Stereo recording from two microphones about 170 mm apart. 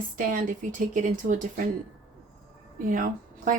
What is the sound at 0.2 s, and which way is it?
A woman's voice, 50° right (ahead or behind).